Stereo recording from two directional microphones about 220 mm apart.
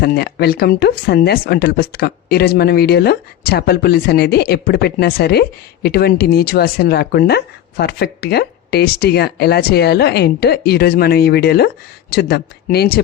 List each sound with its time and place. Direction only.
0.0 s speech: 45° left (ahead or behind)